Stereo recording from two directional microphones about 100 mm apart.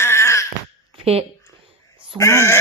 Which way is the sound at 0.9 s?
80° right.